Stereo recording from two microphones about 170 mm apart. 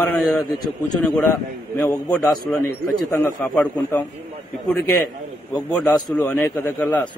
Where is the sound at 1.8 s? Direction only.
10° left (ahead or behind).